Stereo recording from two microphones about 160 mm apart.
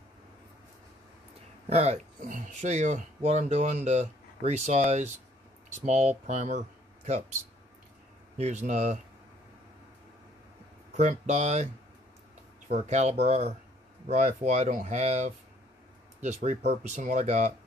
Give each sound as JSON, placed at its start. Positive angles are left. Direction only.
{"t": 1.7, "sound": "speech", "side_deg": -45}
{"t": 8.4, "sound": "speech", "side_deg": -45}
{"t": 11.0, "sound": "speech", "side_deg": -45}